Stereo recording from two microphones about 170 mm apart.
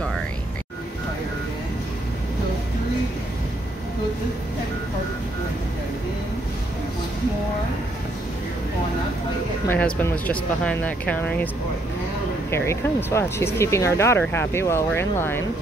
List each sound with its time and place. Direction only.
9.7 s speech: 10° left (ahead or behind)
12.4 s speech: 15° left (ahead or behind)